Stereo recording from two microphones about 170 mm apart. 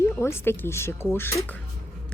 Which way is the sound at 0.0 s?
15° left (ahead or behind).